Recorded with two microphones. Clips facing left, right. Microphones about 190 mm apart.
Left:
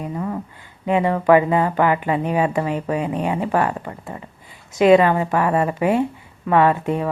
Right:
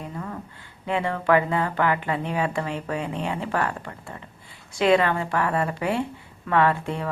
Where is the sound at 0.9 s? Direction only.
15° left (ahead or behind).